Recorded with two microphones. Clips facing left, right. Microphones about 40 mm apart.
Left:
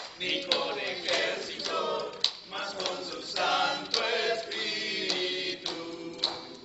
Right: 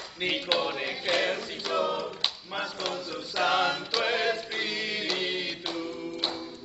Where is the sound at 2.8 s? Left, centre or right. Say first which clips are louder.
Right 2 dB; centre.